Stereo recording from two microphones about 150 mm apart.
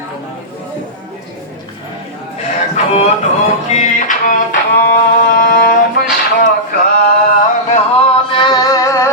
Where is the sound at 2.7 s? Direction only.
45° left (ahead or behind).